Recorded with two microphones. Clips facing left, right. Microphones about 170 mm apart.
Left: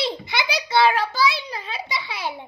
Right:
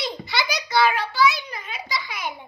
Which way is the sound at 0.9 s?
40° left (ahead or behind).